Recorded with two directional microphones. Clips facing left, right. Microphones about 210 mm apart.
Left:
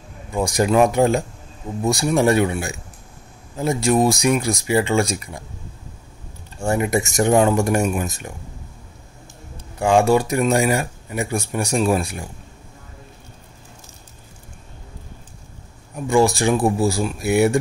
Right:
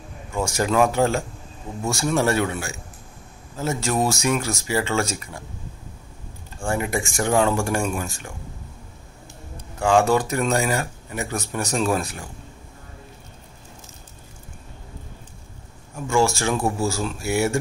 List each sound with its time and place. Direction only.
0.3 s speech: 15° left (ahead or behind)
6.6 s speech: 20° left (ahead or behind)
9.8 s speech: 15° left (ahead or behind)
16.1 s speech: 15° left (ahead or behind)